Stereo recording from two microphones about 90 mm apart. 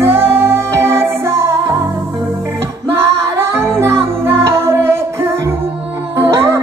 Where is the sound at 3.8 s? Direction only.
25° right (ahead or behind).